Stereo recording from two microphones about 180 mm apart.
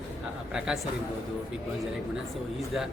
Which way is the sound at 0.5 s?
5° right (ahead or behind).